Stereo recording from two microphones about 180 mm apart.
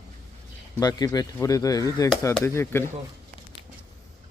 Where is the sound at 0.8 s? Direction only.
20° left (ahead or behind).